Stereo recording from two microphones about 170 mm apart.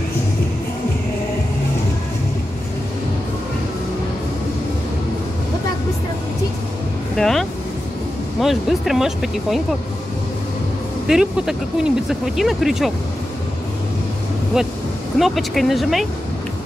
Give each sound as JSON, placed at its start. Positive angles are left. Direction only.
{"t": 7.2, "sound": "speech", "side_deg": 0}
{"t": 11.1, "sound": "speech", "side_deg": -5}
{"t": 15.1, "sound": "speech", "side_deg": 0}